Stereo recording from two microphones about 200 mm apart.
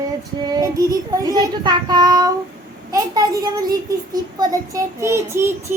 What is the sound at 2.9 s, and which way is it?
Speech, 15° right (ahead or behind).